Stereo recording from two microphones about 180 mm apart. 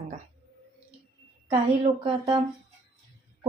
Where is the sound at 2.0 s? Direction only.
25° right (ahead or behind).